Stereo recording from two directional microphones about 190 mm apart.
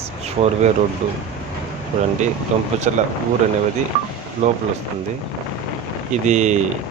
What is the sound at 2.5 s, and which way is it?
Speech, 35° right (ahead or behind).